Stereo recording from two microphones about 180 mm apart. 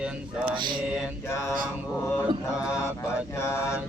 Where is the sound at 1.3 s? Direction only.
15° left (ahead or behind).